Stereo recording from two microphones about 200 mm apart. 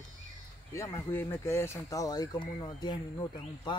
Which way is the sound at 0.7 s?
15° left (ahead or behind).